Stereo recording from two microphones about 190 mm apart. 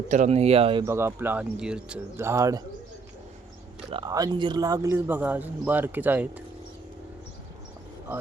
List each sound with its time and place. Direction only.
0.1 s speech: 35° right (ahead or behind)
0.9 s speech: 15° right (ahead or behind)
3.8 s speech: 25° right (ahead or behind); by 6.4 s 10° right (ahead or behind)